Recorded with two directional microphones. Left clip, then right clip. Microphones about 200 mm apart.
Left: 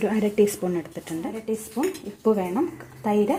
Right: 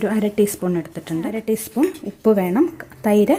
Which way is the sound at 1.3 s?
55° right (ahead or behind).